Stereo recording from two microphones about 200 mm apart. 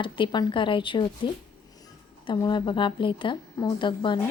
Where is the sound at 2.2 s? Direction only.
25° left (ahead or behind).